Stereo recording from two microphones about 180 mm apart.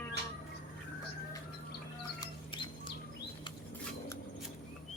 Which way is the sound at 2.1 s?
25° left (ahead or behind).